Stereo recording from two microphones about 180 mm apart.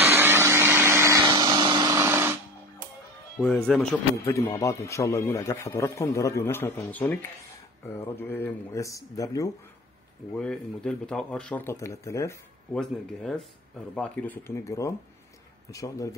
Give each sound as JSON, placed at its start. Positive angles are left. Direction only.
{"t": 0.0, "sound": "vacuum cleaner", "side_deg": -10}
{"t": 3.3, "sound": "speech", "side_deg": 5}
{"t": 4.2, "sound": "a man's voice", "side_deg": 15}
{"t": 10.3, "sound": "a man's voice", "side_deg": 5}
{"t": 12.7, "sound": "a man's voice", "side_deg": 0}